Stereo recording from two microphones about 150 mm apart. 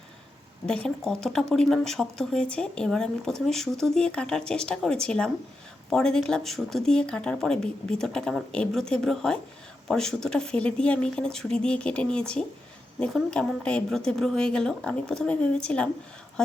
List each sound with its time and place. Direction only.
0.7 s speech: 5° left (ahead or behind)